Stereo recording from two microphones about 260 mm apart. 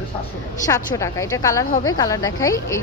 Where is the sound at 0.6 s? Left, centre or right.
Centre.